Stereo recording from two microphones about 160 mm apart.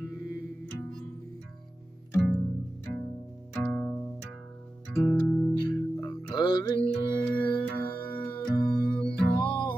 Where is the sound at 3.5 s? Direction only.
5° left (ahead or behind).